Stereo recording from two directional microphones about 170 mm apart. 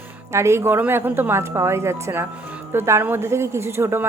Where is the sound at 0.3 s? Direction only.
15° right (ahead or behind).